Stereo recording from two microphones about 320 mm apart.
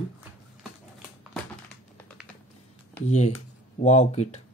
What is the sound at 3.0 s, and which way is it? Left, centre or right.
Speech, left.